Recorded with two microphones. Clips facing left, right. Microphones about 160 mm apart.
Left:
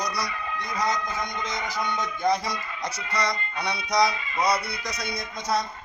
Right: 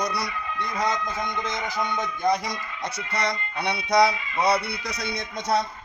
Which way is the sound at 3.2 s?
55° right (ahead or behind).